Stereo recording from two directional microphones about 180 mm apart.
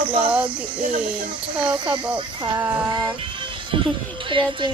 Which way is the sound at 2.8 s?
20° right (ahead or behind).